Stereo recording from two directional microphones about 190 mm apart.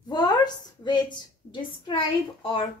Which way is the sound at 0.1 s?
20° left (ahead or behind).